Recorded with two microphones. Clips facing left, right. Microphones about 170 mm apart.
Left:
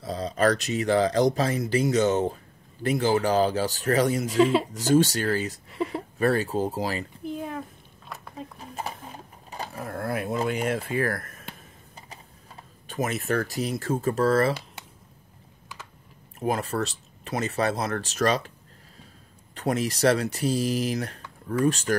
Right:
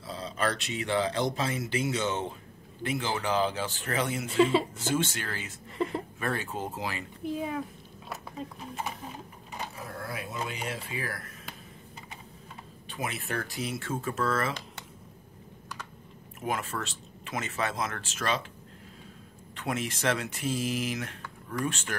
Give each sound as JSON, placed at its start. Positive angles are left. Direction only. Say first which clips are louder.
{"t": 0.0, "sound": "speech", "louder": "left 8 dB", "side_deg": 40}
{"t": 4.3, "sound": "speech", "louder": "even", "side_deg": 0}
{"t": 4.8, "sound": "speech", "louder": "left 9 dB", "side_deg": 40}
{"t": 5.7, "sound": "speech", "louder": "right 3 dB", "side_deg": 0}
{"t": 6.1, "sound": "speech", "louder": "left 13 dB", "side_deg": 35}
{"t": 7.2, "sound": "a sound", "louder": "right 2 dB", "side_deg": 0}
{"t": 9.8, "sound": "speech", "louder": "left 9 dB", "side_deg": 50}
{"t": 12.8, "sound": "speech", "louder": "left 8 dB", "side_deg": 45}
{"t": 16.3, "sound": "speech", "louder": "left 6 dB", "side_deg": 35}
{"t": 19.5, "sound": "speech", "louder": "left 6 dB", "side_deg": 40}